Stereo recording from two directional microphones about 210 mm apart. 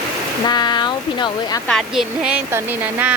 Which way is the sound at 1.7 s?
Centre (ahead or behind).